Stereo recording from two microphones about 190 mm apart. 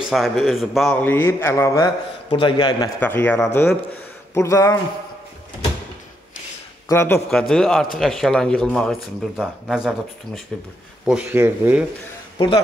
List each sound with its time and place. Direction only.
0.1 s a man's voice: centre (ahead or behind); by 1.9 s 15° left (ahead or behind)
2.2 s a man's voice: 30° left (ahead or behind)
3.0 s a man's voice: 10° left (ahead or behind)
6.9 s a man's voice: 15° left (ahead or behind); by 11.8 s 10° right (ahead or behind)
12.4 s a man's voice: 30° left (ahead or behind)